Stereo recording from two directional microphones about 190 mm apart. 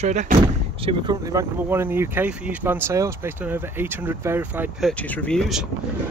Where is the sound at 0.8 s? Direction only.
25° right (ahead or behind); by 4.9 s 10° right (ahead or behind).